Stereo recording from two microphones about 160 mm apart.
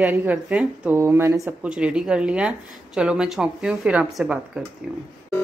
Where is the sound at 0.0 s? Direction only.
10° right (ahead or behind).